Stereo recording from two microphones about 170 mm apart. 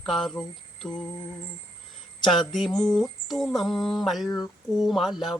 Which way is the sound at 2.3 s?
Centre (ahead or behind).